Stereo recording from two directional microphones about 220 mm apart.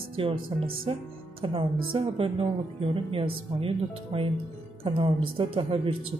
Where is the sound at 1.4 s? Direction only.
25° right (ahead or behind).